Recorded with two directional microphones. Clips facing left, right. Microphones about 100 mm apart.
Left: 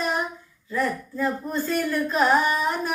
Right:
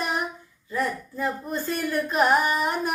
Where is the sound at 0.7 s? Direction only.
15° right (ahead or behind).